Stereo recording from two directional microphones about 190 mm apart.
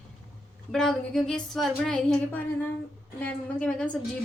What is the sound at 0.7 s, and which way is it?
A woman's voice, 5° left (ahead or behind).